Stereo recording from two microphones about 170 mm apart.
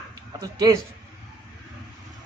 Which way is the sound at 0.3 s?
20° right (ahead or behind).